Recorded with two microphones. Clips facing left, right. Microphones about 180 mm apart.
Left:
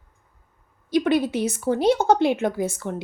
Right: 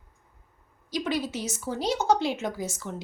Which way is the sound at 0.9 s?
55° left (ahead or behind).